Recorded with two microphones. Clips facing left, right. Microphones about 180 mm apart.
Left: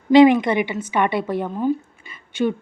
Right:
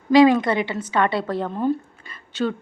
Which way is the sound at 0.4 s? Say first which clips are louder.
Left 2 dB; 15° left (ahead or behind).